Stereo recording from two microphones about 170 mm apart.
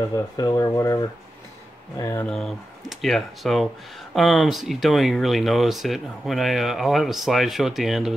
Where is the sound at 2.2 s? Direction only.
Centre (ahead or behind).